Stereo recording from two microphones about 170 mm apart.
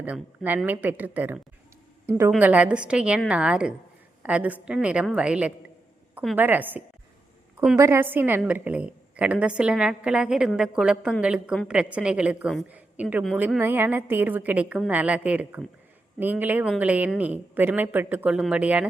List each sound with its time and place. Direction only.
0.0 s a woman's voice: 10° right (ahead or behind)